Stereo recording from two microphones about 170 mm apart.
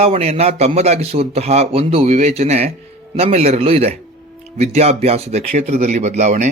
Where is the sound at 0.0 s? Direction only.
35° right (ahead or behind).